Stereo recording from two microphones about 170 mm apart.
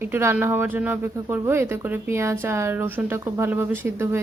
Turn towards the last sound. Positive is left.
turn(degrees=-15)  # may be behind; listen again after turning